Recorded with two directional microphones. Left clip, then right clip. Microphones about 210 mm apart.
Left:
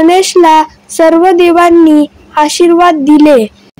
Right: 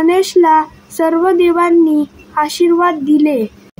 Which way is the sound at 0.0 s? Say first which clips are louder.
Left 5 dB; 30° left (ahead or behind).